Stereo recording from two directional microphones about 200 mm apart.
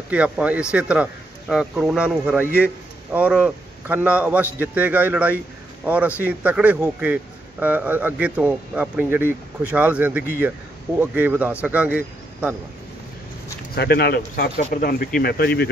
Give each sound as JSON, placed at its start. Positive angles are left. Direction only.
{"t": 0.1, "sound": "a man's voice", "side_deg": -5}
{"t": 13.7, "sound": "speech", "side_deg": 55}